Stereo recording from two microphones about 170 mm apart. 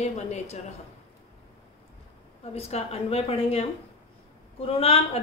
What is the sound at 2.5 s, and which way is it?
A woman's voice, 35° left (ahead or behind).